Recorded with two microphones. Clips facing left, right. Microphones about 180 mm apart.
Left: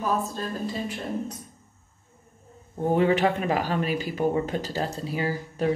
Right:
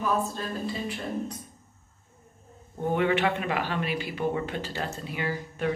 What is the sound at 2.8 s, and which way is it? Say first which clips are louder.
Speech: left 3 dB; 35° left (ahead or behind).